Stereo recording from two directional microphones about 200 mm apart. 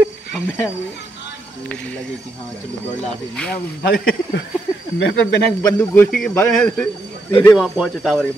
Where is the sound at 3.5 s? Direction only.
45° left (ahead or behind).